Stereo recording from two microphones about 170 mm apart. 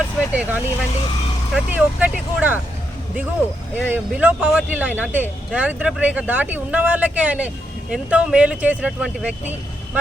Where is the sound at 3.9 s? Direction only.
10° right (ahead or behind).